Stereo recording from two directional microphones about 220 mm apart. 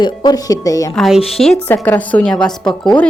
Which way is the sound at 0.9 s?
Centre (ahead or behind).